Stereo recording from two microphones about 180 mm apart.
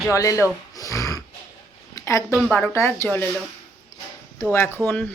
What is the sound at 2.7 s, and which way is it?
Speech, 15° left (ahead or behind).